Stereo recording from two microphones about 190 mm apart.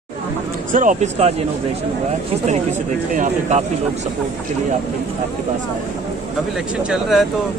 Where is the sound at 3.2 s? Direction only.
40° right (ahead or behind).